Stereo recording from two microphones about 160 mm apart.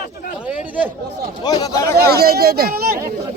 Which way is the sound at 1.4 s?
25° left (ahead or behind).